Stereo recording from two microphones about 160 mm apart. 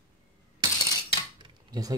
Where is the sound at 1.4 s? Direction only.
25° right (ahead or behind).